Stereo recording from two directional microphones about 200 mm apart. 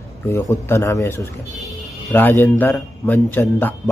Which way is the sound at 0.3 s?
15° left (ahead or behind).